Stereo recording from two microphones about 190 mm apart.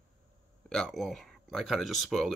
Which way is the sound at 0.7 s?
Centre (ahead or behind).